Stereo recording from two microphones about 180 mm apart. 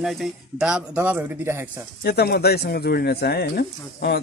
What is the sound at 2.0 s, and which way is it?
Speech, 65° left (ahead or behind).